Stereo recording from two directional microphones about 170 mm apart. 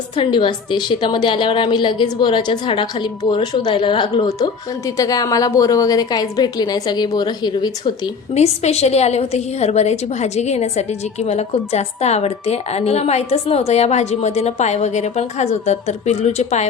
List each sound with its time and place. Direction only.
0.2 s a woman's voice: 30° left (ahead or behind)